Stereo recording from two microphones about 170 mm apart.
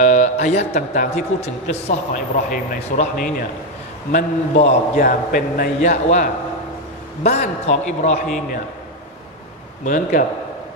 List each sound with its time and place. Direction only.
0.0 s speech: 45° left (ahead or behind)
2.5 s a man's voice: 55° left (ahead or behind)
4.1 s speech: 45° left (ahead or behind)
9.8 s speech: 50° left (ahead or behind)